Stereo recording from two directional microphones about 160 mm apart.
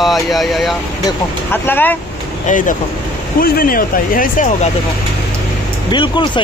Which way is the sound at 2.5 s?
55° left (ahead or behind).